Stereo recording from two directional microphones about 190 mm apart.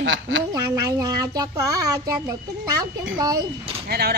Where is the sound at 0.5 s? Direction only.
15° right (ahead or behind).